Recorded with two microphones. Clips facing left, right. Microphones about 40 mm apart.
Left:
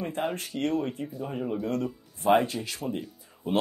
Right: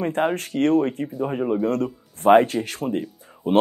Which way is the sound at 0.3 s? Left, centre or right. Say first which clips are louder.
Right 9 dB; right.